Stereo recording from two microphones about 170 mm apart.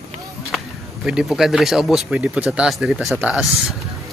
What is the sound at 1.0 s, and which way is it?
Speech, 5° right (ahead or behind).